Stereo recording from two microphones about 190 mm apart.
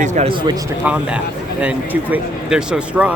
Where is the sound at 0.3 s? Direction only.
25° right (ahead or behind).